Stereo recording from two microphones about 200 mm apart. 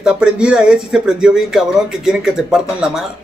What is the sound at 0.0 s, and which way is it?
Speech, 5° right (ahead or behind).